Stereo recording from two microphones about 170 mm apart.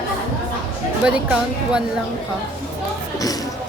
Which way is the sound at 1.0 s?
5° right (ahead or behind).